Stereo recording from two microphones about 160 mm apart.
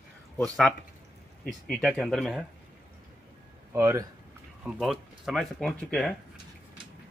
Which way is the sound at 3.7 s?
20° right (ahead or behind).